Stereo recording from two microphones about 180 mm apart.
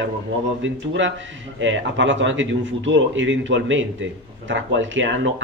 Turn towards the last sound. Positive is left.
turn(degrees=-90)